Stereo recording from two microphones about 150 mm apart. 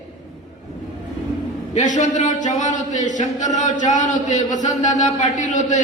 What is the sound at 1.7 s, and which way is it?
A man's voice, 55° left (ahead or behind).